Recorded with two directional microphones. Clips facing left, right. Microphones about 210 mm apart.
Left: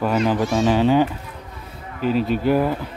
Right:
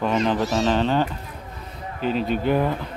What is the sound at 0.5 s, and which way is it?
Speech, 10° left (ahead or behind).